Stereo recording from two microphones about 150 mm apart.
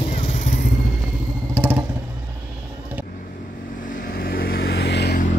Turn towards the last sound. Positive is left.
turn(degrees=90)